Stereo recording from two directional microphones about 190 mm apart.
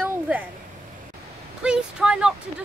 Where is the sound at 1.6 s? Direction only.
5° right (ahead or behind).